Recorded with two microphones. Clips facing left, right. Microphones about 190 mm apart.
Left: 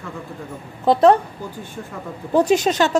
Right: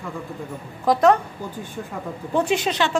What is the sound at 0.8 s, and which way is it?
Speech, 30° left (ahead or behind).